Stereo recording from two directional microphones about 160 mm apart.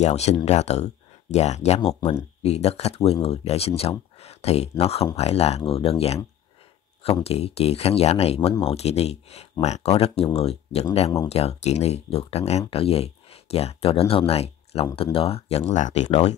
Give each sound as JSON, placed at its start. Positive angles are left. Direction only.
{"t": 0.0, "sound": "speech", "side_deg": 45}
{"t": 7.2, "sound": "speech", "side_deg": 40}
{"t": 16.1, "sound": "speech", "side_deg": 30}